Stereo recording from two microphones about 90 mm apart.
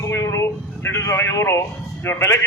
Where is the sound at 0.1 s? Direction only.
30° left (ahead or behind).